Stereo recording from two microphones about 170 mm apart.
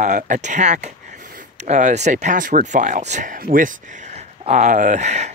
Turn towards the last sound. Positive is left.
turn(degrees=-45)  # may be behind; listen again after turning